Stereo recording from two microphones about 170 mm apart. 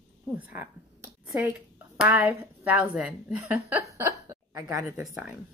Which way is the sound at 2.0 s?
10° right (ahead or behind).